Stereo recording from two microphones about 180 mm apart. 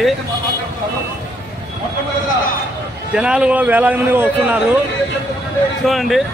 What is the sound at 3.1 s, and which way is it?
A man's voice, 5° right (ahead or behind).